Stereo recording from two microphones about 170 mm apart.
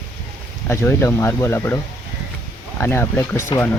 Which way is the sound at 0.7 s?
15° left (ahead or behind).